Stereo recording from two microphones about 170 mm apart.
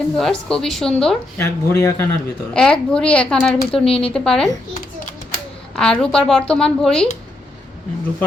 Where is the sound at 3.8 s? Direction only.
35° left (ahead or behind).